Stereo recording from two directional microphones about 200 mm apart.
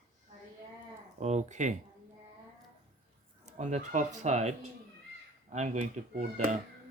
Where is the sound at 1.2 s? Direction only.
35° right (ahead or behind).